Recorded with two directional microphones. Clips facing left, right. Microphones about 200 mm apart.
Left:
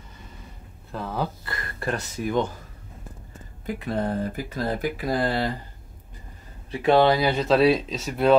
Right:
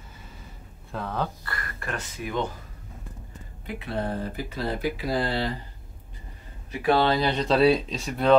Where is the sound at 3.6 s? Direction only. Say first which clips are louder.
Left 3 dB; 45° left (ahead or behind).